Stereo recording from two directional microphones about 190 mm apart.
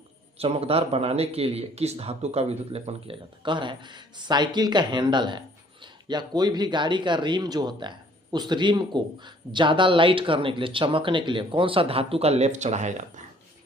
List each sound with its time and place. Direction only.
0.3 s speech: 30° right (ahead or behind)